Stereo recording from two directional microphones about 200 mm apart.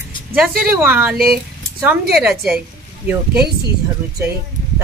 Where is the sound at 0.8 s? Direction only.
10° right (ahead or behind).